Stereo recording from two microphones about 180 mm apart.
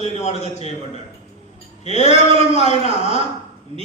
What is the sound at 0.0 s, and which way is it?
Speech, 40° left (ahead or behind).